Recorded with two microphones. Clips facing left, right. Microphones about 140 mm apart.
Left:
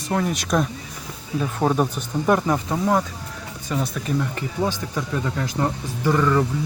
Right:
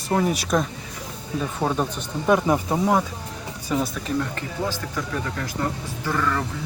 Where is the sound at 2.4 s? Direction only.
10° right (ahead or behind).